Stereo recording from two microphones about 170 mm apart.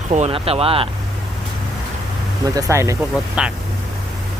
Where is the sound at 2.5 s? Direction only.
20° right (ahead or behind).